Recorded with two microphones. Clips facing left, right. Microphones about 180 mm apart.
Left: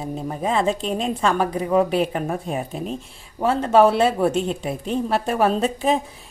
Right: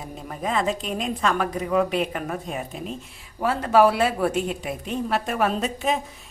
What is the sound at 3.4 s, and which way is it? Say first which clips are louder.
A woman's voice: left 2 dB; 25° left (ahead or behind).